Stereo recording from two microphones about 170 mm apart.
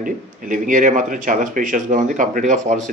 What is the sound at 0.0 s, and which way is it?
Speech, 50° right (ahead or behind).